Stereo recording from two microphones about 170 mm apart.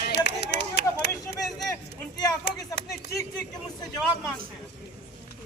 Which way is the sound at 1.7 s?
25° left (ahead or behind).